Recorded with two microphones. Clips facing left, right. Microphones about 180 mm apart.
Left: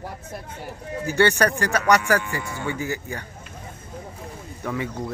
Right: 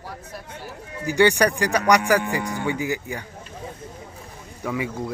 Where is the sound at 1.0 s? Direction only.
15° right (ahead or behind).